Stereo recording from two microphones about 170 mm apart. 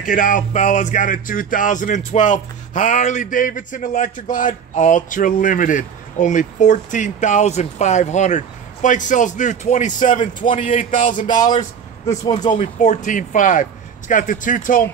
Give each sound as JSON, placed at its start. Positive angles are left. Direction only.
{"t": 0.0, "sound": "music", "side_deg": 50}